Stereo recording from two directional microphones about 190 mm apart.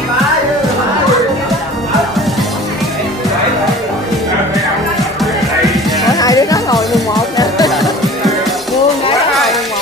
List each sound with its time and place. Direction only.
5.2 s music: centre (ahead or behind)
6.0 s music: 20° left (ahead or behind)
7.7 s music: centre (ahead or behind)
9.3 s a sound: centre (ahead or behind)